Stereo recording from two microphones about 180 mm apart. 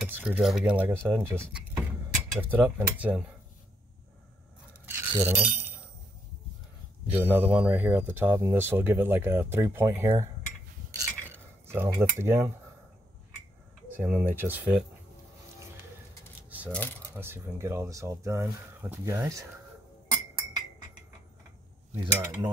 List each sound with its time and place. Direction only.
0.0 s speech: 10° right (ahead or behind)
5.1 s speech: 15° right (ahead or behind)
7.1 s speech: 10° right (ahead or behind)
11.0 s cutlery: 10° right (ahead or behind)
11.9 s speech: 15° right (ahead or behind)
13.9 s speech: 10° right (ahead or behind)
16.4 s a sound: 10° right (ahead or behind)
17.1 s speech: 10° right (ahead or behind)
22.0 s cutlery: 25° right (ahead or behind)